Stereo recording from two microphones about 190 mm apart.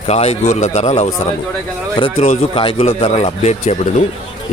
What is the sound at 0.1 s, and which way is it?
Speech, 35° left (ahead or behind).